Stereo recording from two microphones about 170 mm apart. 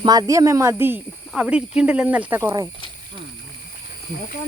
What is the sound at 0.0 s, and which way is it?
Speech, 20° right (ahead or behind).